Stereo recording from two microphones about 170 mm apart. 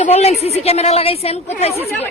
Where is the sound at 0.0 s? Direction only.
40° left (ahead or behind).